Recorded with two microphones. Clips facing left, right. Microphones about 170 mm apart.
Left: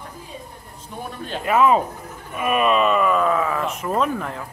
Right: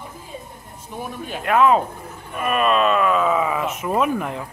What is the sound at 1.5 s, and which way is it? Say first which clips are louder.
Speech: right 1 dB; 5° left (ahead or behind).